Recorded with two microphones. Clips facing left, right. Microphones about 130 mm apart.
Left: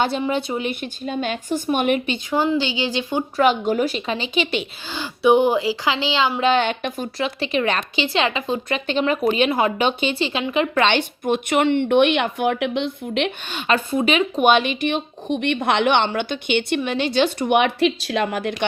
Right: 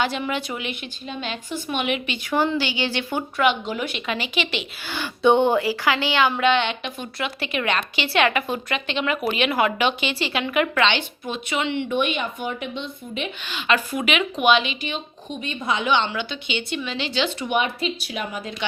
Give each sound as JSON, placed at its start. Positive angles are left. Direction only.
{"t": 0.1, "sound": "speech", "side_deg": 30}
{"t": 2.3, "sound": "speech", "side_deg": 15}
{"t": 3.3, "sound": "a woman's voice", "side_deg": 40}
{"t": 4.9, "sound": "speech", "side_deg": 15}
{"t": 6.4, "sound": "a woman's voice", "side_deg": 40}
{"t": 8.0, "sound": "speech", "side_deg": 20}
{"t": 8.7, "sound": "a woman's voice", "side_deg": 35}
{"t": 10.8, "sound": "a woman's voice", "side_deg": 50}
{"t": 13.5, "sound": "a woman's voice", "side_deg": 40}
{"t": 13.7, "sound": "a woman's voice", "side_deg": 30}
{"t": 14.4, "sound": "a woman's voice", "side_deg": 50}